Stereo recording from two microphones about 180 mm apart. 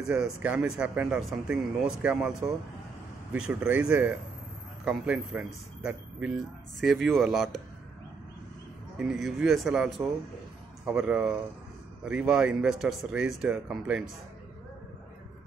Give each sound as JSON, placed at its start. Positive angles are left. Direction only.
{"t": 0.0, "sound": "speech", "side_deg": -5}
{"t": 8.9, "sound": "speech", "side_deg": -5}